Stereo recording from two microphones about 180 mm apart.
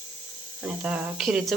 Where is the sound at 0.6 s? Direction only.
5° right (ahead or behind).